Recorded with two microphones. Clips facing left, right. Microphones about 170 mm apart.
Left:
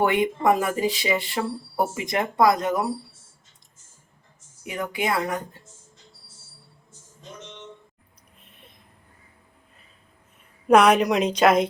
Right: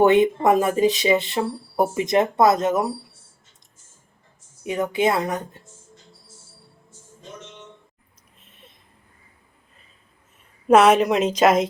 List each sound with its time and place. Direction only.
0.0 s speech: 20° right (ahead or behind)
4.6 s speech: 25° right (ahead or behind)
10.7 s a woman's voice: 5° right (ahead or behind)